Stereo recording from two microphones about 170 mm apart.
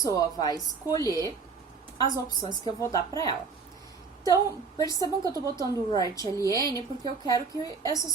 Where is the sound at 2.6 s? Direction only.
20° left (ahead or behind).